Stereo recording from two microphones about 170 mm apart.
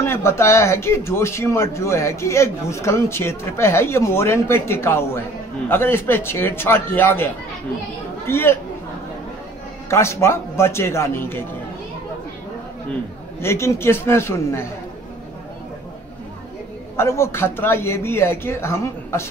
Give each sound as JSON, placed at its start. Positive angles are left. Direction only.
{"t": 0.0, "sound": "speech", "side_deg": 15}
{"t": 8.3, "sound": "speech", "side_deg": 15}
{"t": 9.8, "sound": "speech", "side_deg": 15}
{"t": 13.4, "sound": "speech", "side_deg": 15}
{"t": 16.9, "sound": "speech", "side_deg": 15}